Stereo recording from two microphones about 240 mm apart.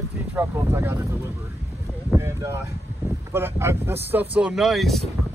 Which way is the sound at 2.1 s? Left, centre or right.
Centre.